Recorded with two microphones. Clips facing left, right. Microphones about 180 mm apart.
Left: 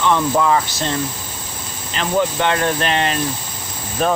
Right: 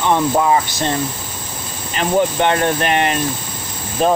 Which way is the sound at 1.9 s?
20° right (ahead or behind).